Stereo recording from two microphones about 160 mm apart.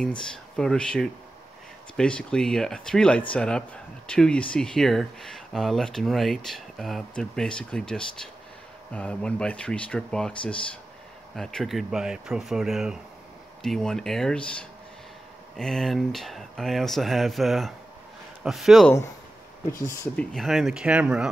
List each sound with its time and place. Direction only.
0.0 s speech: 5° left (ahead or behind)
19.9 s speech: 15° left (ahead or behind)
20.3 s speech: centre (ahead or behind)